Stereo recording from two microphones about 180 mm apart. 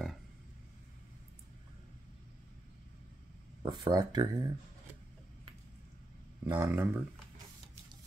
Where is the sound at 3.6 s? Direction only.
25° right (ahead or behind).